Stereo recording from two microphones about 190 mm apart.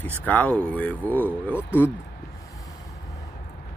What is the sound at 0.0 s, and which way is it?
Speech, 10° left (ahead or behind).